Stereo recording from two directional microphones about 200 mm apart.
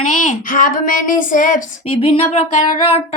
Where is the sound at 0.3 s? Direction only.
40° left (ahead or behind).